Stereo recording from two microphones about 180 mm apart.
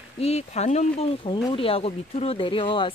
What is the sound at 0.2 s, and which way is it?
Speech, 35° left (ahead or behind).